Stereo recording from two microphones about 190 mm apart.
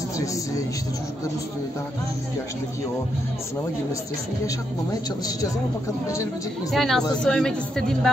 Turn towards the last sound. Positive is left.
turn(degrees=5)  # may be behind; listen again after turning